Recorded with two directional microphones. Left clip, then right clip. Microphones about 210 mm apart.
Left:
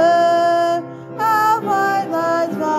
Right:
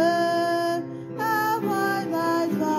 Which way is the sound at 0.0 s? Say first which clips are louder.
Left 9 dB; 20° left (ahead or behind).